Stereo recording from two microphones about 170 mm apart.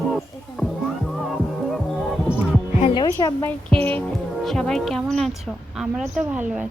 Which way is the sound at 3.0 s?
20° left (ahead or behind).